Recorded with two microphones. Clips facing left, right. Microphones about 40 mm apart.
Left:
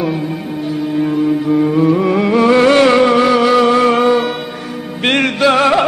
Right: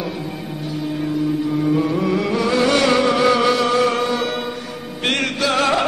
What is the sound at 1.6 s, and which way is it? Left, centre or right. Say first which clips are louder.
Music: left 6 dB; left.